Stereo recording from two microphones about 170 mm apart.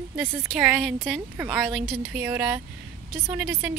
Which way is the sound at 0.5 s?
5° right (ahead or behind).